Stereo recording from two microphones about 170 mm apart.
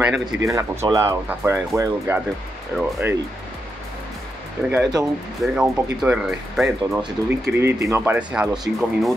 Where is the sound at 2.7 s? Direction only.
5° left (ahead or behind).